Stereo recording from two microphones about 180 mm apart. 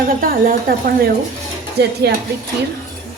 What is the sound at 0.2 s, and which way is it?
Speech, 55° right (ahead or behind).